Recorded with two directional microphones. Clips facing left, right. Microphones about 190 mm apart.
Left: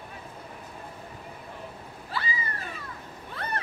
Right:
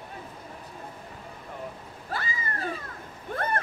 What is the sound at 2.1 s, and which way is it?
Cat, 50° right (ahead or behind).